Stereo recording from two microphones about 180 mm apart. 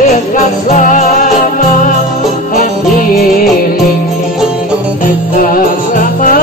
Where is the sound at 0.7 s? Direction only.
45° left (ahead or behind).